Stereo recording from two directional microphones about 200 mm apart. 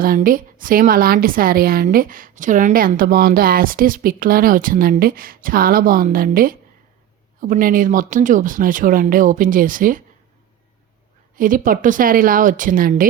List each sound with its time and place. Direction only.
0.0 s a woman's voice: 45° right (ahead or behind)
11.3 s a woman's voice: 45° right (ahead or behind)